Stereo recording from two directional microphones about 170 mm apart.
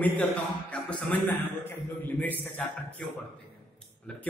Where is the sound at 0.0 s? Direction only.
10° left (ahead or behind).